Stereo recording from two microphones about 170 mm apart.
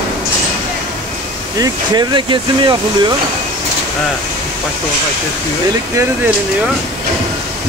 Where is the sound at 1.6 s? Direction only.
25° right (ahead or behind).